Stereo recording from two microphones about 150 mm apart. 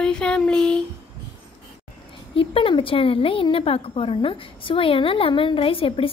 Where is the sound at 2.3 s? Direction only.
35° left (ahead or behind).